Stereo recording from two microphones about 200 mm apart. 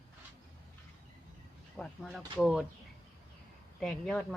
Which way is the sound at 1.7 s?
Centre (ahead or behind).